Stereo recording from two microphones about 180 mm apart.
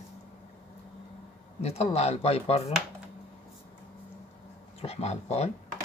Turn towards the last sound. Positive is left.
turn(degrees=35)  # may be behind; listen again after turning